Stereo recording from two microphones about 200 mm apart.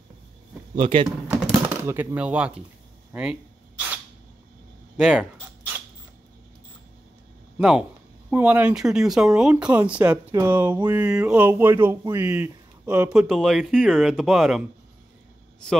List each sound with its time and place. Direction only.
0.7 s speech: 25° right (ahead or behind)
1.2 s speech: 5° right (ahead or behind)
3.1 s a sound: 5° right (ahead or behind)
4.9 s speech: 5° right (ahead or behind)
7.5 s speech: 5° right (ahead or behind)